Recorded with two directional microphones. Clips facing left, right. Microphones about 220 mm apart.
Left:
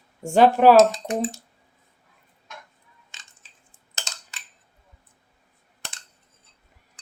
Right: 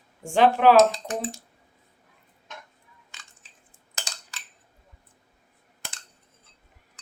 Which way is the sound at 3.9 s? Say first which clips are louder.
Even; 20° left (ahead or behind).